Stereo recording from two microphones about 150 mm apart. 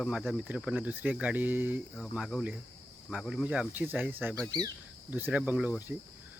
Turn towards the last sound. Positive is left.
turn(degrees=-10)  # may be behind; listen again after turning